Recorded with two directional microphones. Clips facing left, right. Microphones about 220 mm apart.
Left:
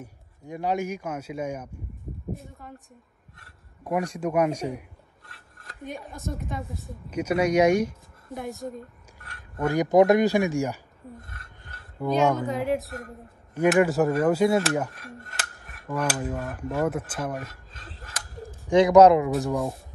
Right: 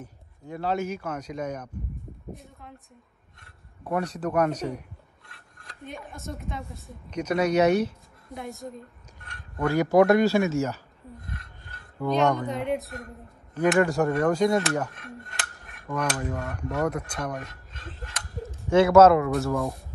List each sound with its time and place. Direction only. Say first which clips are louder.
0.0 s a man's voice: even; 15° left (ahead or behind)
3.8 s speech: left 1 dB; 10° left (ahead or behind)
8.3 s speech: left 3 dB; centre (ahead or behind)
9.2 s a sound: even; centre (ahead or behind)
9.7 s a man's voice: left 1 dB; 20° left (ahead or behind)
11.1 s a sound: right 4 dB; centre (ahead or behind)
12.1 s speech: left 1 dB; 5° left (ahead or behind)
14.9 s cutlery: right 1 dB; centre (ahead or behind)
18.0 s a sound: right 2 dB; centre (ahead or behind)
18.7 s a man's voice: left 1 dB; 15° left (ahead or behind)